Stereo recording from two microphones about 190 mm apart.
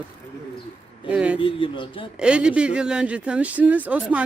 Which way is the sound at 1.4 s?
30° left (ahead or behind).